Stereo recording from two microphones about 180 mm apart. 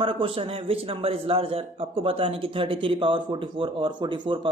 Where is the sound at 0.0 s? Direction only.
30° right (ahead or behind).